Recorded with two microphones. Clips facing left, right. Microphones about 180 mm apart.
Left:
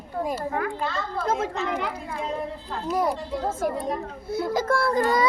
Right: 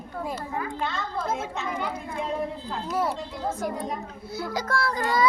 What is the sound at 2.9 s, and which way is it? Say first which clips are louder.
Speech: left 3 dB; 15° left (ahead or behind).